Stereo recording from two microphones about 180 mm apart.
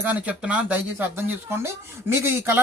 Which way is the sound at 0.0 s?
10° right (ahead or behind).